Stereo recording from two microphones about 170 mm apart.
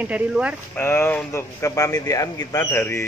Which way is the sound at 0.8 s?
15° left (ahead or behind).